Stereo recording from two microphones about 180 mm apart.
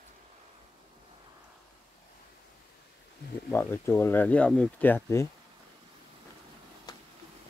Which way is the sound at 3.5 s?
15° left (ahead or behind).